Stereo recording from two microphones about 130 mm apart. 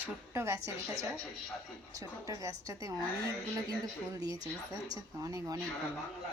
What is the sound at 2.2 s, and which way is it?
Speech, 25° right (ahead or behind).